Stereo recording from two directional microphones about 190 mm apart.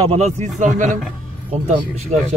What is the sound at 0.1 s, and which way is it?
A man's voice, 35° right (ahead or behind).